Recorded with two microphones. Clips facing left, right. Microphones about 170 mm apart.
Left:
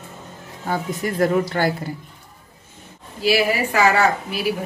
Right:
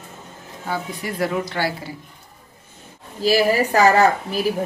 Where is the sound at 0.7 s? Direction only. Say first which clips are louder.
Left 3 dB; 45° left (ahead or behind).